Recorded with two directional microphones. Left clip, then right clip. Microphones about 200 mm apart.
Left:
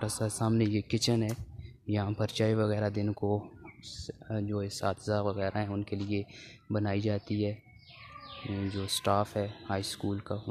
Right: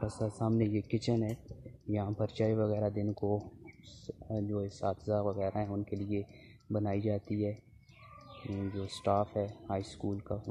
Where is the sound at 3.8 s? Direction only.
10° left (ahead or behind).